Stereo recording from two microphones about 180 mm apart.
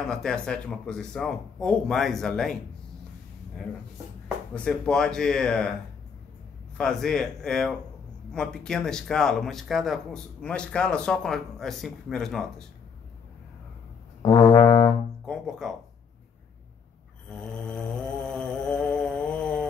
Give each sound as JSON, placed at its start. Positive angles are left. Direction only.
{"t": 0.0, "sound": "speech", "side_deg": 5}
{"t": 4.6, "sound": "speech", "side_deg": 5}
{"t": 6.8, "sound": "speech", "side_deg": 5}
{"t": 14.2, "sound": "brass instrument", "side_deg": 20}
{"t": 15.2, "sound": "speech", "side_deg": 0}
{"t": 17.3, "sound": "mantra", "side_deg": 5}